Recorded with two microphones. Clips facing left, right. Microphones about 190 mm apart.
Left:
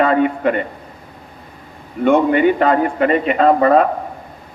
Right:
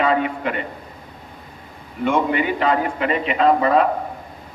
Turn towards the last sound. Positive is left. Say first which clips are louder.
# left 4 dB
turn(degrees=45)  # may be behind; listen again after turning